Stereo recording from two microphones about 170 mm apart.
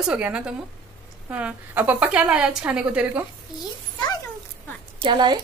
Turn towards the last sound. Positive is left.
turn(degrees=-25)  # may be behind; listen again after turning